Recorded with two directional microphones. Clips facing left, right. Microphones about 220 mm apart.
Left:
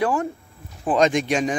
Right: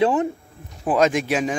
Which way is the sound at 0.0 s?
20° right (ahead or behind).